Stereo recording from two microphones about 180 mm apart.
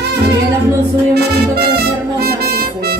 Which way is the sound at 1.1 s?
60° right (ahead or behind).